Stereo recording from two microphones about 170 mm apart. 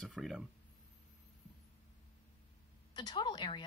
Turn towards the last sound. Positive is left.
turn(degrees=25)  # may be behind; listen again after turning